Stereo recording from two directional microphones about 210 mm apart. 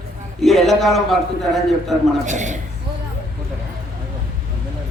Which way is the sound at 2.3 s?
35° right (ahead or behind).